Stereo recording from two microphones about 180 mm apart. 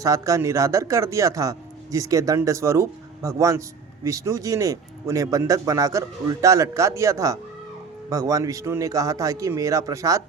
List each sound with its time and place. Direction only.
0.0 s speech: 20° right (ahead or behind)